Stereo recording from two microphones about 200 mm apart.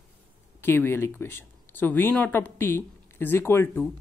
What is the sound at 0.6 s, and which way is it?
Speech, 10° left (ahead or behind).